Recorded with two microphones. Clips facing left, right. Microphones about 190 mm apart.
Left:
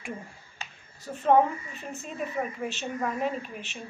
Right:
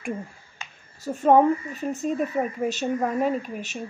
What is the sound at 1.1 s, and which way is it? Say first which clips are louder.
A woman's voice: right 5 dB; 45° right (ahead or behind).